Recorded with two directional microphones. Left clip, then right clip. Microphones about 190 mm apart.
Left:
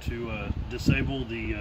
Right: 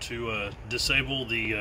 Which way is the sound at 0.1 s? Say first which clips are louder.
Right 2 dB; centre (ahead or behind).